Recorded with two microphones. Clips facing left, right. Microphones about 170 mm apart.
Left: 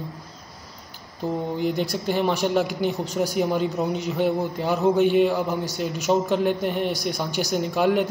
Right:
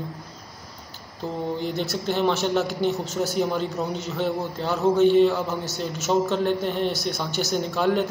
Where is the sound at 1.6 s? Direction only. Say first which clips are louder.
Left 3 dB; 10° left (ahead or behind).